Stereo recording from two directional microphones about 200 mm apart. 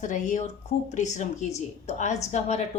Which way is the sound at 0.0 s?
40° left (ahead or behind).